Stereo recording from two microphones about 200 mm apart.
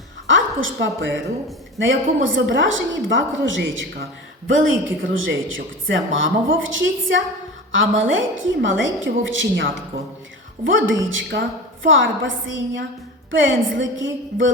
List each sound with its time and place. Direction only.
0.3 s a woman's voice: 70° right (ahead or behind)